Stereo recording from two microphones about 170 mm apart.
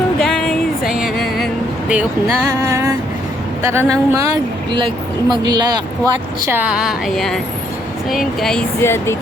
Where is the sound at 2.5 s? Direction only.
15° right (ahead or behind).